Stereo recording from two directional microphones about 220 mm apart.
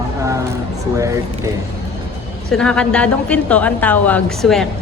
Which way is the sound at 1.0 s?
15° right (ahead or behind).